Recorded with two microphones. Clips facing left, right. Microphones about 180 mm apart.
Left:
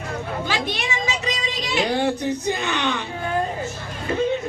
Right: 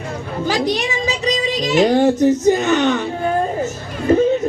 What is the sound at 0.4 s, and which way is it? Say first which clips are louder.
A woman's voice: right 12 dB; 40° right (ahead or behind).